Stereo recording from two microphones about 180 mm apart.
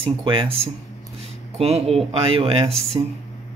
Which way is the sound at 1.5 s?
35° right (ahead or behind).